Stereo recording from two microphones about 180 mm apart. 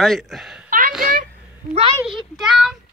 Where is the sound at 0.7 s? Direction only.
50° right (ahead or behind).